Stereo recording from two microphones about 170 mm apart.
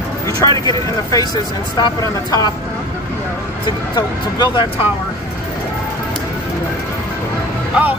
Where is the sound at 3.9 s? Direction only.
25° left (ahead or behind).